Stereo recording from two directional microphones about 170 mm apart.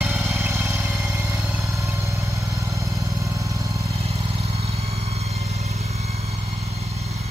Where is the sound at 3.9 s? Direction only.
35° right (ahead or behind).